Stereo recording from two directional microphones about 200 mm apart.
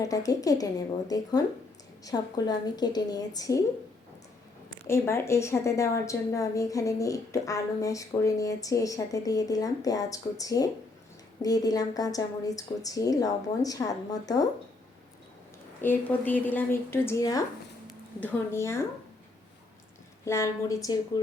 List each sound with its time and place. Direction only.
0.0 s a woman's voice: 15° left (ahead or behind)
4.9 s a woman's voice: 15° left (ahead or behind)
15.8 s a woman's voice: 10° left (ahead or behind)
20.2 s a woman's voice: 15° left (ahead or behind)